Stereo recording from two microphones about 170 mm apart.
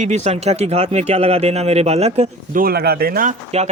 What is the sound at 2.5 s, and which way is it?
Speech, 60° right (ahead or behind).